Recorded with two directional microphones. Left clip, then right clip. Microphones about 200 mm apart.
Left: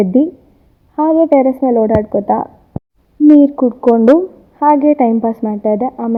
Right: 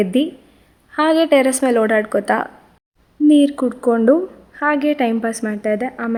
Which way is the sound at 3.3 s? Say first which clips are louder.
Left 5 dB; 25° left (ahead or behind).